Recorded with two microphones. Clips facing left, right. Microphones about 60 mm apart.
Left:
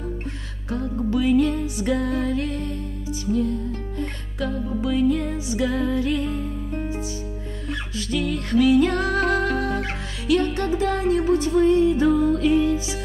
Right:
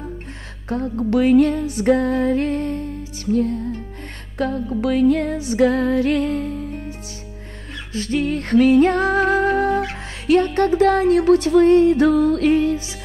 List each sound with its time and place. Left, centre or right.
1.1 s music: right
2.1 s music: right
3.3 s music: right
4.4 s music: right
7.9 s music: right
10.3 s music: right
10.8 s music: right